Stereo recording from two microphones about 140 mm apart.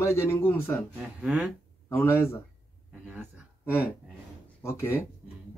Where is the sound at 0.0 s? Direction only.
20° left (ahead or behind).